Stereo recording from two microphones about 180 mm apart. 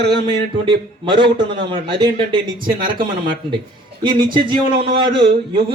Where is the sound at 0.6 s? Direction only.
25° right (ahead or behind).